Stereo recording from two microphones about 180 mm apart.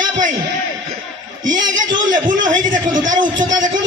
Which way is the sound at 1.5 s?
45° right (ahead or behind).